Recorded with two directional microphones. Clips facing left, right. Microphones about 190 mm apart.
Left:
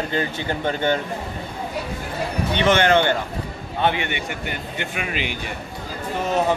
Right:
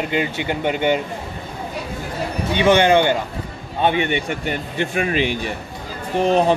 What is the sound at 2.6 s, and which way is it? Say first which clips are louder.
A man's voice: right 3 dB; 15° right (ahead or behind).